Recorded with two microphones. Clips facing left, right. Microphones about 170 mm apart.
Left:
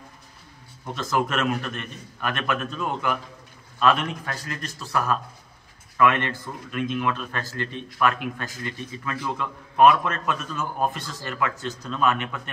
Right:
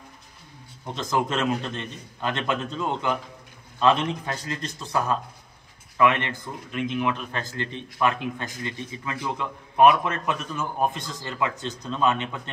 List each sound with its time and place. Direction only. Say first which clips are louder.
0.8 s a man's voice: even; 20° right (ahead or behind)